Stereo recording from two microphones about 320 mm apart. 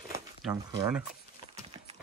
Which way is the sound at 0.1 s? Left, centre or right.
Centre.